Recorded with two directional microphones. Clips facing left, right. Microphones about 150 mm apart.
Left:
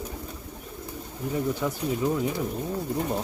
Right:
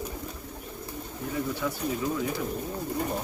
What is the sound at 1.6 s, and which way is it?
Speech, 25° left (ahead or behind).